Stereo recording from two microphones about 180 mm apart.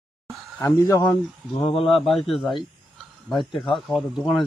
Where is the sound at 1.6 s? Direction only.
30° left (ahead or behind).